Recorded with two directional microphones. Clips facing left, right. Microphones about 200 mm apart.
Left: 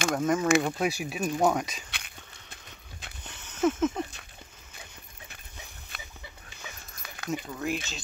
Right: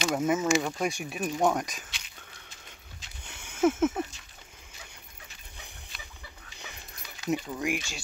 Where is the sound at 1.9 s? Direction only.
55° left (ahead or behind).